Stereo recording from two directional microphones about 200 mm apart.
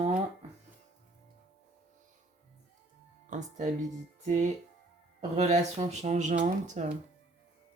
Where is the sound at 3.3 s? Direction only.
35° right (ahead or behind).